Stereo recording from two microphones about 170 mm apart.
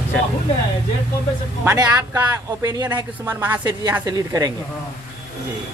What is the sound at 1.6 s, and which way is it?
Speech, 15° right (ahead or behind).